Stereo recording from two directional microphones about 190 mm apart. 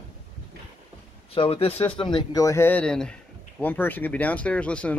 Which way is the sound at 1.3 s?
30° left (ahead or behind).